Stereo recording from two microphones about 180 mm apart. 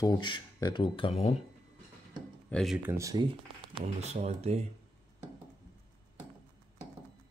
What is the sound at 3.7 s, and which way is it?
Speech, 40° right (ahead or behind).